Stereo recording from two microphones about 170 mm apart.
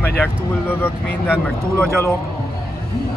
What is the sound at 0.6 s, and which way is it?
Speech, 10° left (ahead or behind).